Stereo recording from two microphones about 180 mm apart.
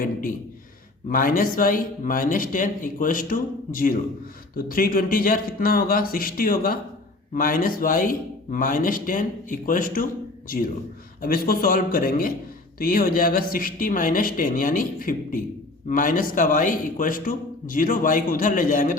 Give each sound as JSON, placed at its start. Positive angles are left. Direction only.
{"t": 0.0, "sound": "speech", "side_deg": 50}
{"t": 11.2, "sound": "speech", "side_deg": 55}